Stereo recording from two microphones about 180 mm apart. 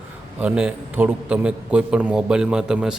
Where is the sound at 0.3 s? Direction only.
10° right (ahead or behind).